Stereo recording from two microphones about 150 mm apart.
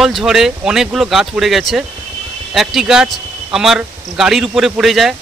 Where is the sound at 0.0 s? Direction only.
Centre (ahead or behind).